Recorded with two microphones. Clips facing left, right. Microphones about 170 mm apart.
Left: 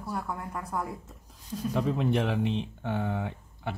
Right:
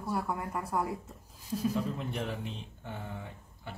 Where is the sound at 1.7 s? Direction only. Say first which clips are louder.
Left 7 dB; 75° left (ahead or behind).